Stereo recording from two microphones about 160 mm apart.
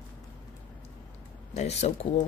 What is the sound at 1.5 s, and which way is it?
Speech, 45° left (ahead or behind).